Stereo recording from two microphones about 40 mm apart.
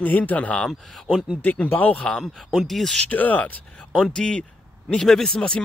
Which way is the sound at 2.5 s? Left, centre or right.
Centre.